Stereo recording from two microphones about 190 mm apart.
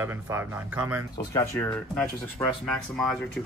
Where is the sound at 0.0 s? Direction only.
10° right (ahead or behind).